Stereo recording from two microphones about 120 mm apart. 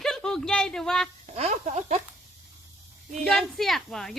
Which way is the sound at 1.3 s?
70° right (ahead or behind).